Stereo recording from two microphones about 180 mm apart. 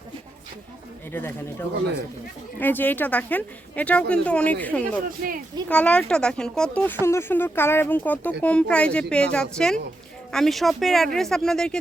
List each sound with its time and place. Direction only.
1.1 s speech: 10° left (ahead or behind)